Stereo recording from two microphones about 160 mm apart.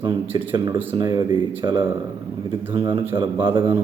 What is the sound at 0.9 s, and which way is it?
Speech, 25° right (ahead or behind).